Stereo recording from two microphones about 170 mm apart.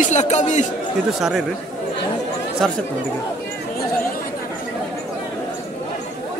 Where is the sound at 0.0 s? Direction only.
45° left (ahead or behind).